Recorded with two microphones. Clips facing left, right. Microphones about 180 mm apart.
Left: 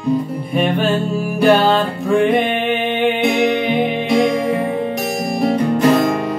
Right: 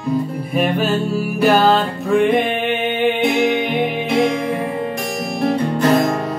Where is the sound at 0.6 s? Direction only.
5° right (ahead or behind).